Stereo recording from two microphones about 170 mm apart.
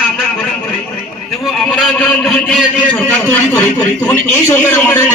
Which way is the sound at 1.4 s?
5° left (ahead or behind).